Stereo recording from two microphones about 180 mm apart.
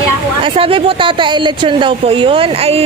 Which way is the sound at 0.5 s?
30° right (ahead or behind).